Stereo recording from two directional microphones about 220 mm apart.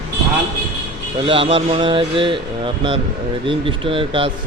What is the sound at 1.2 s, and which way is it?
Speech, 25° right (ahead or behind).